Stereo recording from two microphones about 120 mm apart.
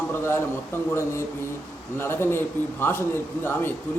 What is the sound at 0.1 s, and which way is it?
A man's voice, 20° left (ahead or behind).